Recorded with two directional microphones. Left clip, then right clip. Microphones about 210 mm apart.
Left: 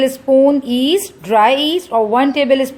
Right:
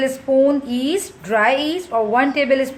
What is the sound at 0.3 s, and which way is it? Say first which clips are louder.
A woman's voice: left 4 dB; 35° left (ahead or behind).